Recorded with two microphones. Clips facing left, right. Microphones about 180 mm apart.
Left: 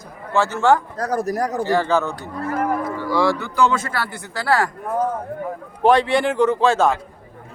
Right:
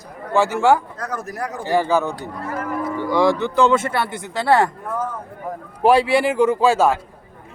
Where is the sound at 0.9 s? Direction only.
35° left (ahead or behind).